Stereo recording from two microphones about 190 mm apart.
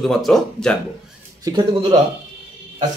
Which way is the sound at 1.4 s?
20° right (ahead or behind).